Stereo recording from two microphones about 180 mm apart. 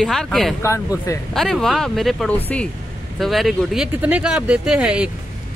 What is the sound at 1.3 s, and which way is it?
Speech, centre (ahead or behind).